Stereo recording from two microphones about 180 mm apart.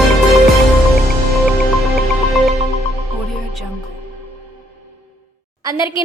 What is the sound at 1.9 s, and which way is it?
Music, centre (ahead or behind).